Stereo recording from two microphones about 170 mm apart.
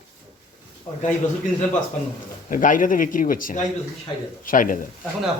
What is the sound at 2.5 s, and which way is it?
A man's voice, 50° left (ahead or behind).